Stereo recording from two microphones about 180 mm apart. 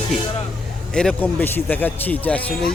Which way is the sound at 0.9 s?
5° left (ahead or behind).